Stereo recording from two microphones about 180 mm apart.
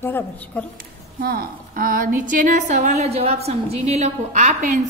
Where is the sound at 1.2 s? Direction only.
55° right (ahead or behind).